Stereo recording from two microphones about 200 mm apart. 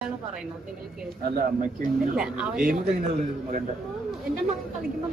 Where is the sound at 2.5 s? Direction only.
45° right (ahead or behind).